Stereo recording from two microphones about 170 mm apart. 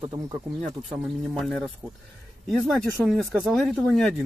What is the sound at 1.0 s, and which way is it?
Speech, centre (ahead or behind).